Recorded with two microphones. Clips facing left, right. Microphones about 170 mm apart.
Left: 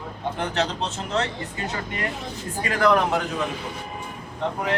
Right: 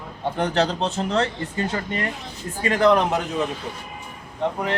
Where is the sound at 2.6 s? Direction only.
25° right (ahead or behind).